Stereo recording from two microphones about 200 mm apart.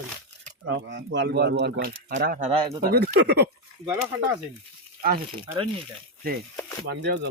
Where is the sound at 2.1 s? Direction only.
40° right (ahead or behind).